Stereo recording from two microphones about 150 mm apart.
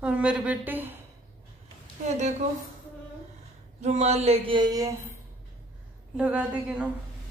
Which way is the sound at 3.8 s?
50° right (ahead or behind).